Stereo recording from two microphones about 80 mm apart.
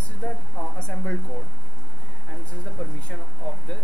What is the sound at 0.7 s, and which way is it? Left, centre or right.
Speech, centre.